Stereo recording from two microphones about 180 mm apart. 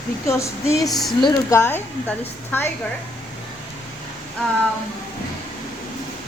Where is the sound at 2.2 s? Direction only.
10° left (ahead or behind).